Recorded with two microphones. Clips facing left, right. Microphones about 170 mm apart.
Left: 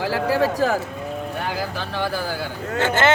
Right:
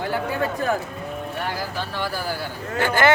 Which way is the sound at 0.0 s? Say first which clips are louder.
Left 4 dB; 90° left.